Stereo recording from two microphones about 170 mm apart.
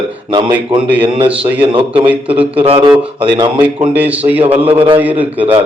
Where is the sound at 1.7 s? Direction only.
30° right (ahead or behind).